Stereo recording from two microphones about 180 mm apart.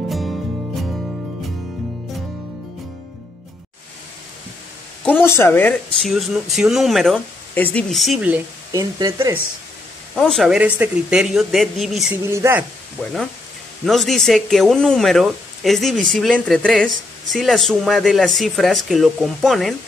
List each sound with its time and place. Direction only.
0.1 s music: centre (ahead or behind)
5.0 s speech: 10° left (ahead or behind); by 8.4 s 5° right (ahead or behind)
8.7 s speech: 20° right (ahead or behind)
10.1 s speech: 5° left (ahead or behind)
12.2 s speech: 15° right (ahead or behind)
13.8 s speech: centre (ahead or behind)